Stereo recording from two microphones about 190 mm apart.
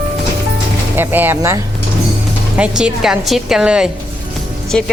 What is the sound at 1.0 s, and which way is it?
Speech, 10° right (ahead or behind).